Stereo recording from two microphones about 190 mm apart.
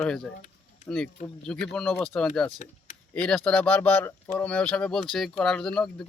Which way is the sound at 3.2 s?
5° left (ahead or behind).